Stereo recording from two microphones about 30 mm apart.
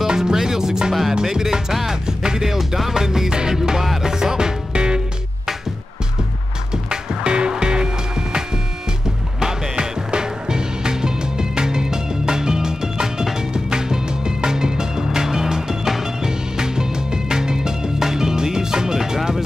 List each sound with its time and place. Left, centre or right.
0.1 s music: centre
2.5 s music: centre
6.7 s music: right